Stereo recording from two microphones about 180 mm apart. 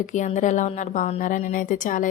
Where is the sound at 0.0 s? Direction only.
45° left (ahead or behind).